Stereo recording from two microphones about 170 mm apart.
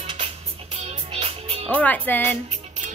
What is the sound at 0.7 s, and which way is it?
Music, 35° right (ahead or behind).